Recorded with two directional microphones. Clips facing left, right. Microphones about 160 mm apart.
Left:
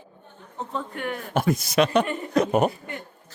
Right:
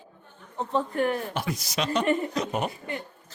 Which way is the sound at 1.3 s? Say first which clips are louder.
Left 8 dB; 50° left (ahead or behind).